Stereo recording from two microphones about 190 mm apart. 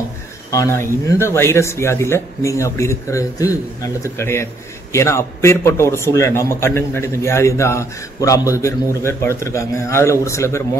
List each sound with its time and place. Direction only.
0.5 s a man's voice: 15° left (ahead or behind)